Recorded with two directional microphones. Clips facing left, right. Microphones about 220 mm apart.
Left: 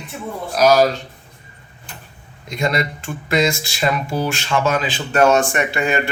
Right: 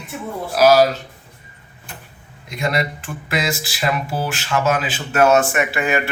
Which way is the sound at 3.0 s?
5° right (ahead or behind).